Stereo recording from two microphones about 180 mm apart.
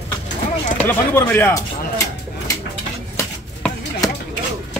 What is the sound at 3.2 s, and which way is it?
Chopping, 15° left (ahead or behind).